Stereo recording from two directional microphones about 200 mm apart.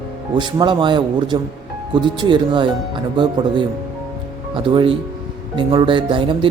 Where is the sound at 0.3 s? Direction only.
25° right (ahead or behind).